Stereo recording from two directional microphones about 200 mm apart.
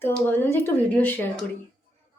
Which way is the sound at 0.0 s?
10° left (ahead or behind).